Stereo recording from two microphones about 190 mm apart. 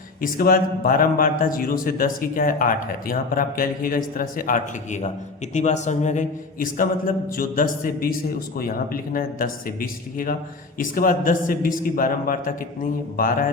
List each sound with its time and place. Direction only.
0.2 s a man's voice: 50° left (ahead or behind)